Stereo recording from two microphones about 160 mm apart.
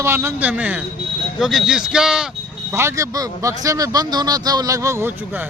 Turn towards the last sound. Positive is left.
turn(degrees=-10)  # may be behind; listen again after turning